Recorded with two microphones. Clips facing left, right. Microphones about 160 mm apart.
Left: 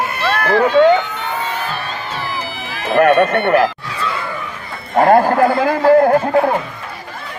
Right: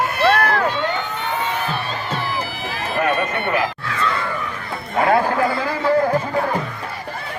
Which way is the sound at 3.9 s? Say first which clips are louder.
Right 1 dB; 10° left (ahead or behind).